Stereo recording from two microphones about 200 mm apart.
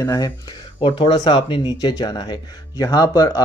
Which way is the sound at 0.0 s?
15° left (ahead or behind).